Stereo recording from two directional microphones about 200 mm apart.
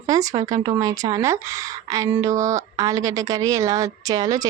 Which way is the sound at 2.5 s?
20° right (ahead or behind).